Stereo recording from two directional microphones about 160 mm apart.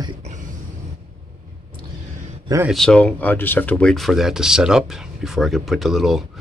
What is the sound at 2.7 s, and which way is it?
Speech, 5° left (ahead or behind).